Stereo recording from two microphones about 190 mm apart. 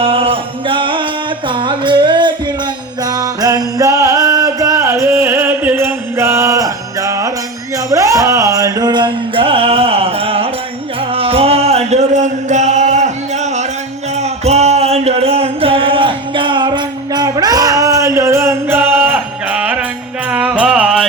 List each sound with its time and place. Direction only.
0.0 s music: 30° right (ahead or behind); by 21.1 s 5° right (ahead or behind)